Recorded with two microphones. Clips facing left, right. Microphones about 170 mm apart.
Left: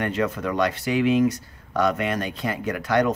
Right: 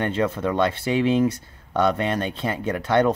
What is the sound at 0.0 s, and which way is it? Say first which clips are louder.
Speech: right 2 dB; 30° right (ahead or behind).